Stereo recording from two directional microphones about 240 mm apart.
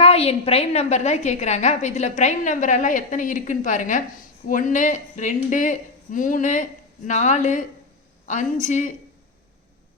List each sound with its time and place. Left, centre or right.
0.0 s a woman's voice: left
8.6 s speech: left